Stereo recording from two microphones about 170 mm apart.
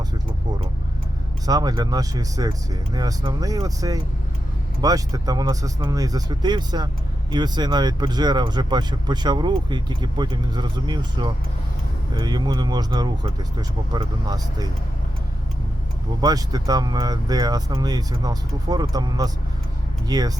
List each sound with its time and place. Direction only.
1.5 s speech: 20° right (ahead or behind)
16.2 s speech: 20° right (ahead or behind)